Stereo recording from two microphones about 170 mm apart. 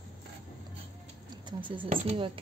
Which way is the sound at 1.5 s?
25° right (ahead or behind).